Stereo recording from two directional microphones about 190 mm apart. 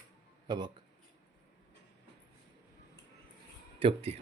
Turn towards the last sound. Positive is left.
turn(degrees=-30)  # may be behind; listen again after turning